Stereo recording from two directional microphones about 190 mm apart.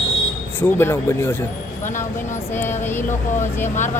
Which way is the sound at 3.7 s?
40° left (ahead or behind).